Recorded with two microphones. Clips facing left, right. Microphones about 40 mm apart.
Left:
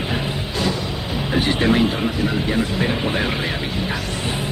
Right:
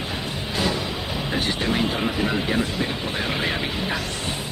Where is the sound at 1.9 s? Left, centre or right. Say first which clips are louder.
Left 2 dB; centre.